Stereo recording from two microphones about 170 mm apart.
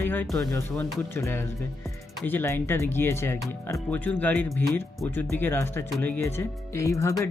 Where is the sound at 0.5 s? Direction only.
15° left (ahead or behind).